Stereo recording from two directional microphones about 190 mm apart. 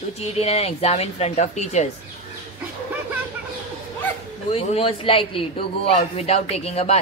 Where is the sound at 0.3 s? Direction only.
35° left (ahead or behind).